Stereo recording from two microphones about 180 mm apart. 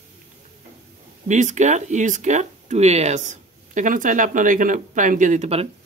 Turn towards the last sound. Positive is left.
turn(degrees=-35)  # may be behind; listen again after turning